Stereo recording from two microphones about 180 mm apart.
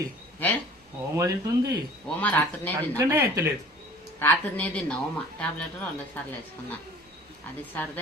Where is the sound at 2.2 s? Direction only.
10° left (ahead or behind).